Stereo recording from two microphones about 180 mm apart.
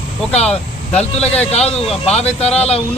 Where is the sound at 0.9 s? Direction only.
35° left (ahead or behind).